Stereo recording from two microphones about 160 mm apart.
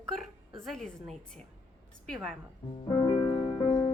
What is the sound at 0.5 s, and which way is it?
A woman's voice, 5° left (ahead or behind).